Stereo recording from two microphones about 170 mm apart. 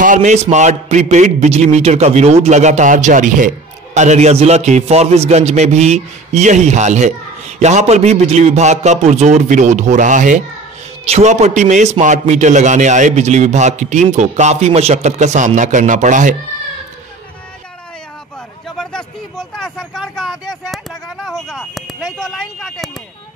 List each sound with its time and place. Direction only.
0.0 s a man's voice: 45° right (ahead or behind)
18.8 s vehicle: 5° left (ahead or behind)